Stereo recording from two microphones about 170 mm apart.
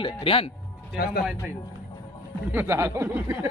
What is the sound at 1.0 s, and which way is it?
Speech, 65° left (ahead or behind).